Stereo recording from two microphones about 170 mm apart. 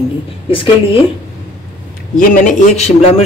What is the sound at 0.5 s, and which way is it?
Speech, 30° left (ahead or behind).